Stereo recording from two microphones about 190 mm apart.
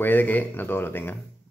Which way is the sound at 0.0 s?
10° left (ahead or behind).